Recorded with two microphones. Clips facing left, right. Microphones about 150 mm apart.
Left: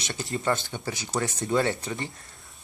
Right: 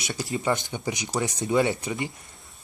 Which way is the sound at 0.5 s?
15° right (ahead or behind).